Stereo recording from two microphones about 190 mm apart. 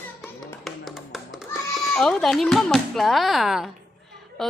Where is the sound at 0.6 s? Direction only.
Centre (ahead or behind).